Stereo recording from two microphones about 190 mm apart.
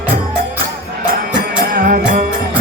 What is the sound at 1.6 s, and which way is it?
Music, 50° right (ahead or behind).